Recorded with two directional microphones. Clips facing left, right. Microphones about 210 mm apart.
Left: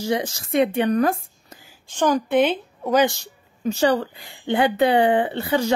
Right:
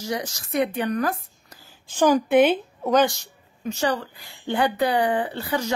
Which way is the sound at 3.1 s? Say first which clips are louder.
Left 4 dB; 30° left (ahead or behind).